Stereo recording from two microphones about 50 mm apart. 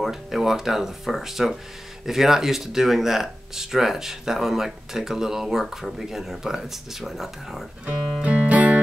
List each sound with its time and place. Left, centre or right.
0.0 s speech: centre
7.8 s music: right